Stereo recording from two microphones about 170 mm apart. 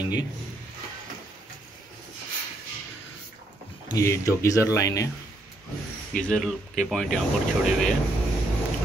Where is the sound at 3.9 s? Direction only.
20° left (ahead or behind).